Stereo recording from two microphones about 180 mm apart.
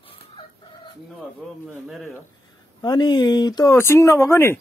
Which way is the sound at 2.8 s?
25° left (ahead or behind).